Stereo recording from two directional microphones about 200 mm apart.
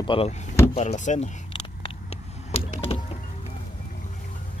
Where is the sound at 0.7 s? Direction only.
35° left (ahead or behind).